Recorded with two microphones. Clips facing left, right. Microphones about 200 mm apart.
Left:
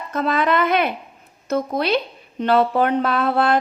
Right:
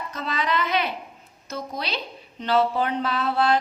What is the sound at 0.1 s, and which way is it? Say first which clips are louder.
A woman's voice: left 9 dB; 55° left (ahead or behind).